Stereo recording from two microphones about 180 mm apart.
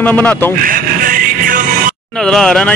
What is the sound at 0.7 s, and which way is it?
Music, 50° right (ahead or behind).